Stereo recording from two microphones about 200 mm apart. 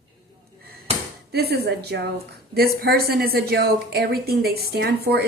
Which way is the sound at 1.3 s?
55° right (ahead or behind).